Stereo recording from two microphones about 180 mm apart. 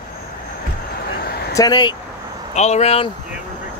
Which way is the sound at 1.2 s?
60° left (ahead or behind).